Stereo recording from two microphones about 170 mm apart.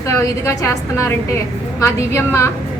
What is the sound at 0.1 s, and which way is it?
A woman's voice, 15° left (ahead or behind).